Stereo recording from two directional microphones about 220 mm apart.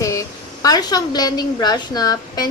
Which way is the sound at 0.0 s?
15° left (ahead or behind).